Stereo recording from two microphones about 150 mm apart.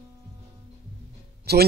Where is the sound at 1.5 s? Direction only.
90° right.